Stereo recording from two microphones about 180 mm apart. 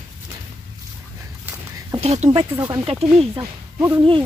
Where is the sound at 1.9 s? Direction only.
35° right (ahead or behind).